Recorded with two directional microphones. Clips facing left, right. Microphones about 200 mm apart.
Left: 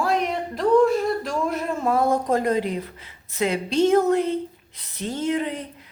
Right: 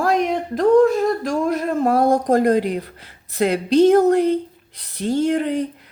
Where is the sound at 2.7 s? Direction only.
65° right (ahead or behind).